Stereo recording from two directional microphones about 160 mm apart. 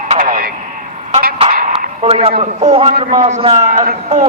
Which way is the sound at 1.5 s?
60° right (ahead or behind).